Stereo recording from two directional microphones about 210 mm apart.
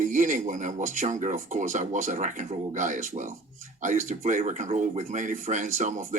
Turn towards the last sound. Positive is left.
turn(degrees=-35)  # may be behind; listen again after turning